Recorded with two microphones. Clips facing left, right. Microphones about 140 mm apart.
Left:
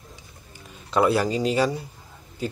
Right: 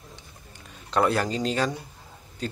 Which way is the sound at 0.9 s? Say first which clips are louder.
Left 3 dB; 5° left (ahead or behind).